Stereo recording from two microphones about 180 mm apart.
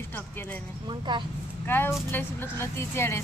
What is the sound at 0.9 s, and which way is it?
Speech, 25° right (ahead or behind).